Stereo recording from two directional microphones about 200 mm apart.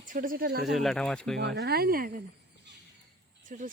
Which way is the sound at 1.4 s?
60° right (ahead or behind).